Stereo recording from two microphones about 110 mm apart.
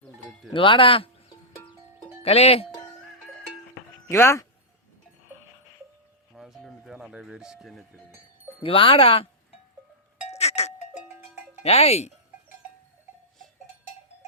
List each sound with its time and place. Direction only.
0.0 s cowbell: centre (ahead or behind)
0.5 s speech: 50° left (ahead or behind)
2.2 s speech: 70° left (ahead or behind)
4.1 s speech: 25° left (ahead or behind)
6.3 s music: centre (ahead or behind)
8.6 s speech: 55° left (ahead or behind)
10.2 s cowbell: 80° left
11.6 s speech: 70° left (ahead or behind)